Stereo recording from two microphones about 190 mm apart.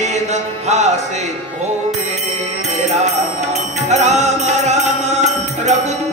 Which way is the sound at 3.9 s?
35° right (ahead or behind).